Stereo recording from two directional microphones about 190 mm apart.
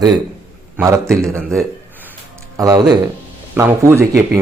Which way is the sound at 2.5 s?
20° right (ahead or behind).